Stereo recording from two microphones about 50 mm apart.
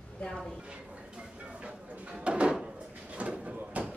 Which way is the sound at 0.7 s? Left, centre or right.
Right.